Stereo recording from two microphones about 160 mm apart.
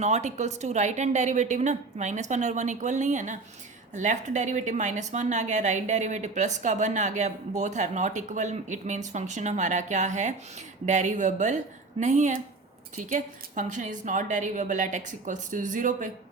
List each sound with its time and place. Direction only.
0.0 s a woman's voice: 45° right (ahead or behind)